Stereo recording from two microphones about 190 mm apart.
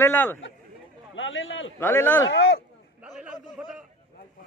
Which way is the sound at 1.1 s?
85° left.